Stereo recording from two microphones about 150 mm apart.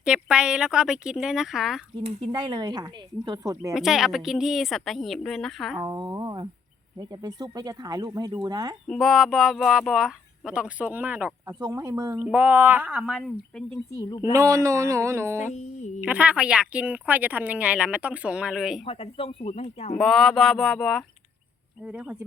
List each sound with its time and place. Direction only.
0.0 s speech: 5° right (ahead or behind)
2.0 s speech: 30° right (ahead or behind)
3.8 s speech: 5° right (ahead or behind)
5.8 s speech: 25° right (ahead or behind)
8.9 s speech: centre (ahead or behind)
11.6 s speech: 25° right (ahead or behind)
12.1 s speech: 10° right (ahead or behind)
13.9 s speech: 20° left (ahead or behind)
14.3 s speech: 20° right (ahead or behind); by 18.8 s 5° right (ahead or behind)
18.9 s speech: 40° left (ahead or behind)
20.0 s speech: 5° left (ahead or behind)
21.8 s speech: 5° right (ahead or behind)